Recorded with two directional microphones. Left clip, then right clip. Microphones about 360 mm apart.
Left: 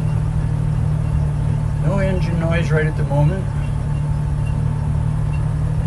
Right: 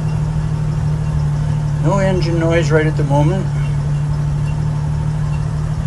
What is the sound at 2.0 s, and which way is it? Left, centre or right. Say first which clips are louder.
Vehicle: right 5 dB; centre.